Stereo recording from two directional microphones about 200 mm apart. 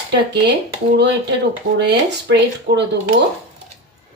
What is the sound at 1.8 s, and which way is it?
Speech, 55° right (ahead or behind).